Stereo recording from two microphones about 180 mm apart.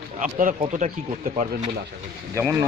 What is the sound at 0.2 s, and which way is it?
Speech, 50° right (ahead or behind).